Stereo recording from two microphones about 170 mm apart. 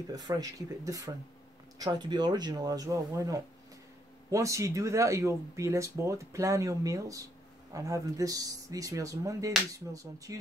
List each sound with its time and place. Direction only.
0.1 s speech: 20° right (ahead or behind)